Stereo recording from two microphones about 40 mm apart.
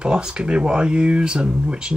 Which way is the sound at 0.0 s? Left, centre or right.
Right.